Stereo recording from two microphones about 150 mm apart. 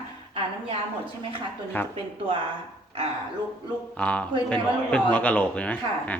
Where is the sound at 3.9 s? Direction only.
10° left (ahead or behind).